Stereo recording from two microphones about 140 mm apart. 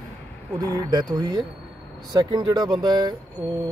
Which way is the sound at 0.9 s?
30° right (ahead or behind).